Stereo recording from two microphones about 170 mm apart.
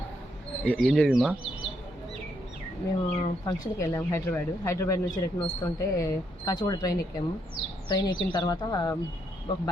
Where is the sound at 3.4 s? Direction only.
20° left (ahead or behind).